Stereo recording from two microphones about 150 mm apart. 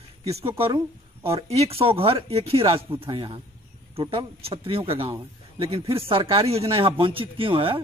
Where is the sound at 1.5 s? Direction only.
40° right (ahead or behind).